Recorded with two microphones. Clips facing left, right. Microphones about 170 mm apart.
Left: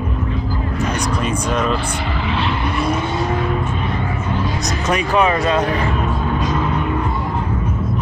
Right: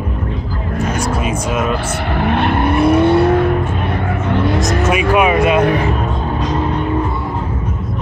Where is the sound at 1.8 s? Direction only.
65° right (ahead or behind).